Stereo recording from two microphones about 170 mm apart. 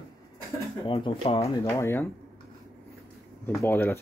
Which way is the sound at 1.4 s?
15° left (ahead or behind).